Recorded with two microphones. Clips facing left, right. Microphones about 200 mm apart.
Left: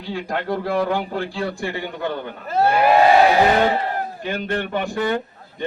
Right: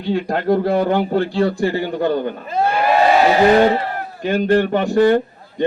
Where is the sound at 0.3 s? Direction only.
40° right (ahead or behind).